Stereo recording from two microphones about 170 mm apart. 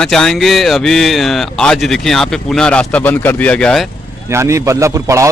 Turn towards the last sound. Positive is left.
turn(degrees=-15)  # may be behind; listen again after turning